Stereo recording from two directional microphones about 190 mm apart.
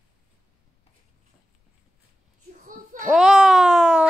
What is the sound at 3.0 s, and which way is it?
Speech, centre (ahead or behind).